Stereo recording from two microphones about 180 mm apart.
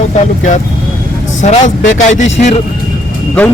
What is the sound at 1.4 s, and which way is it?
Speech, 40° left (ahead or behind).